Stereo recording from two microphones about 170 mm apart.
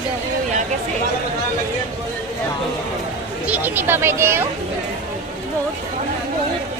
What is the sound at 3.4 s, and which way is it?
Speech, 10° right (ahead or behind).